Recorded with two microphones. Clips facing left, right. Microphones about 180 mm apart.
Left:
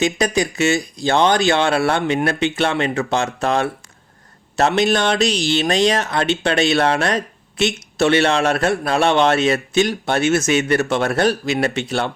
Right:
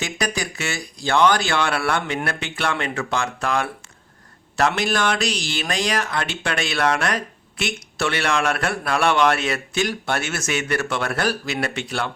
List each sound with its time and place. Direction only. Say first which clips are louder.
0.0 s speech: left 8 dB; 20° left (ahead or behind)